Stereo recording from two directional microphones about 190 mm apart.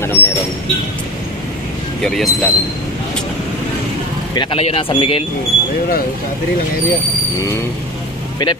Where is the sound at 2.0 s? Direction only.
Centre (ahead or behind).